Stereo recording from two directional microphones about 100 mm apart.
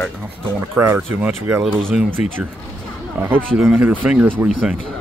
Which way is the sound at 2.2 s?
90° left.